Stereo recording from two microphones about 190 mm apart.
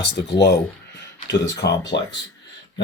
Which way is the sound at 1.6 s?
60° left (ahead or behind).